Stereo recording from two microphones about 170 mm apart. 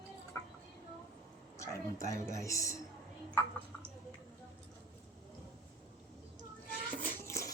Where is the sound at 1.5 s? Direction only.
15° left (ahead or behind).